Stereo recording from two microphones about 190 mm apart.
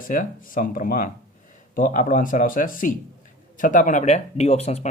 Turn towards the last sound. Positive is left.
turn(degrees=35)  # may be behind; listen again after turning